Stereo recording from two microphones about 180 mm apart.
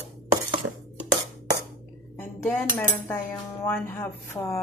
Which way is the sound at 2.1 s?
10° left (ahead or behind).